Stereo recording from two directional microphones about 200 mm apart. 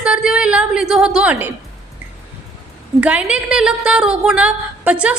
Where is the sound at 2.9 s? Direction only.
5° right (ahead or behind).